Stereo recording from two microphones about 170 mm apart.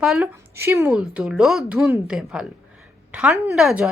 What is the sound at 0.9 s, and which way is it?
Speech, 5° right (ahead or behind).